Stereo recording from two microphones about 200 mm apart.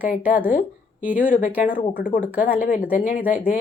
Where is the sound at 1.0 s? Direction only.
10° right (ahead or behind).